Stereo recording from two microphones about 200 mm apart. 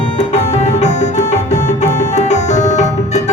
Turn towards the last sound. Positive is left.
turn(degrees=35)  # may be behind; listen again after turning